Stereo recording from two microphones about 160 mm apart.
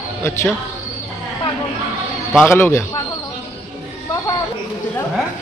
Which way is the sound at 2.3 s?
15° left (ahead or behind).